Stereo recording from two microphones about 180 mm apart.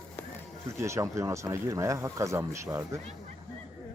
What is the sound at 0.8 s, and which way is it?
Speech, 15° right (ahead or behind).